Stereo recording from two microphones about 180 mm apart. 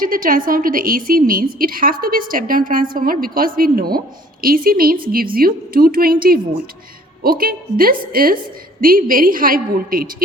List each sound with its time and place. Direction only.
0.0 s a woman's voice: 50° right (ahead or behind)